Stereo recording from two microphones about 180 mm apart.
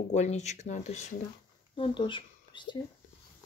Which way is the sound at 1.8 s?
30° left (ahead or behind).